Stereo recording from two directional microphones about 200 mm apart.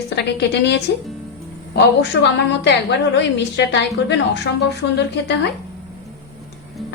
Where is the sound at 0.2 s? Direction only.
60° left (ahead or behind).